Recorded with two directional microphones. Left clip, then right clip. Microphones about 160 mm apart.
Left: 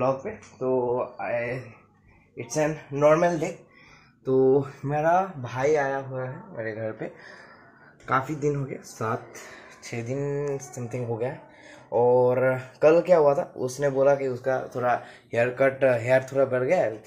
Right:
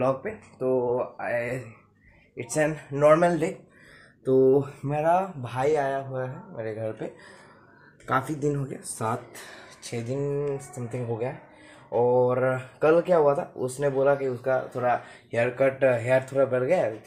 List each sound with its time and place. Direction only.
0.0 s speech: 15° right (ahead or behind)
2.5 s speech: 20° right (ahead or behind)
8.2 s speech: 15° right (ahead or behind)
10.2 s speech: 5° right (ahead or behind)
12.7 s speech: 15° right (ahead or behind)
13.4 s speech: 5° right (ahead or behind)